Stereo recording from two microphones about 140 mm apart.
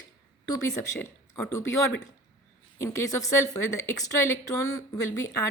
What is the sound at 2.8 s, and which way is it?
A woman's voice, 20° left (ahead or behind).